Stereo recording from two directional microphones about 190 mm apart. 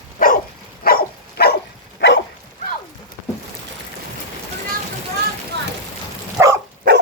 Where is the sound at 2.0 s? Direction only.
70° left (ahead or behind).